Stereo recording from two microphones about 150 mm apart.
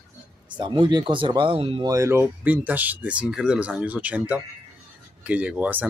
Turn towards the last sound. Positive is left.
turn(degrees=-10)  # may be behind; listen again after turning